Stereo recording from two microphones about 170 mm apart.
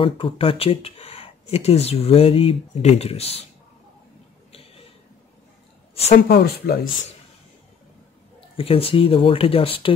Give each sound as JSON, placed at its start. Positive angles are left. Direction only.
{"t": 0.0, "sound": "speech", "side_deg": 30}
{"t": 4.5, "sound": "a sound", "side_deg": 35}
{"t": 6.1, "sound": "speech", "side_deg": 65}
{"t": 8.5, "sound": "speech", "side_deg": 35}